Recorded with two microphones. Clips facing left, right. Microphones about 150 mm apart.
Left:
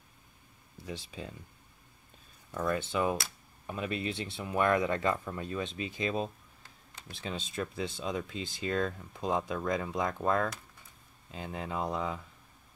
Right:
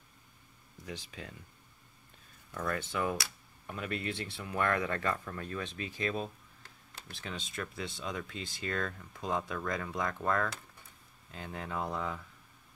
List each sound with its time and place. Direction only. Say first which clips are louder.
0.8 s speech: left 3 dB; 25° left (ahead or behind)
2.6 s speech: left 4 dB; 20° left (ahead or behind)